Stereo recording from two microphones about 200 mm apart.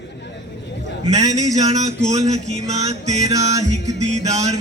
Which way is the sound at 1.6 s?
35° right (ahead or behind).